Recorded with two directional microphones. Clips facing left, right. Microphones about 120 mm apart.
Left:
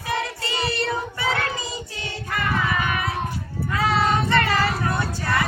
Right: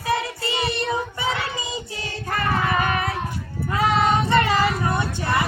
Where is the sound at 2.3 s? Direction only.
40° right (ahead or behind).